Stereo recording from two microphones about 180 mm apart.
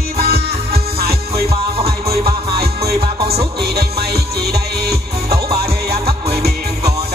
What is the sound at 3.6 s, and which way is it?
Music, 60° right (ahead or behind).